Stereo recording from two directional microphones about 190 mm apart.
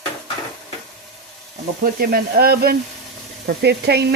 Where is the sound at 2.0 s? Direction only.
55° right (ahead or behind).